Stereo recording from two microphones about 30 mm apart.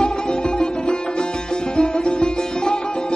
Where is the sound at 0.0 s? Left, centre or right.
Left.